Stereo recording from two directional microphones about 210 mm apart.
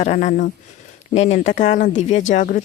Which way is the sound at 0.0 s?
35° left (ahead or behind).